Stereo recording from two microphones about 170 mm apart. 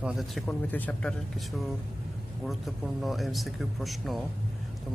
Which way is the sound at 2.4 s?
Centre (ahead or behind).